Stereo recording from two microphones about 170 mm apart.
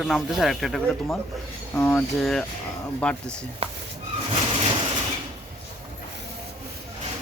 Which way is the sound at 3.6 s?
35° right (ahead or behind).